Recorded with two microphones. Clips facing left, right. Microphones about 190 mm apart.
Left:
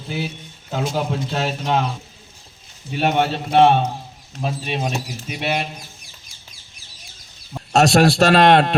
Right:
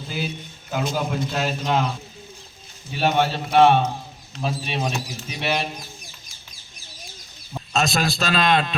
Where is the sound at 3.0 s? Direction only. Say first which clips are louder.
Left 2 dB; 25° left (ahead or behind).